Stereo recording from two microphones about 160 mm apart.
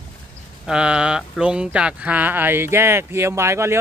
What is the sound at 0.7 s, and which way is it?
Speech, 5° right (ahead or behind).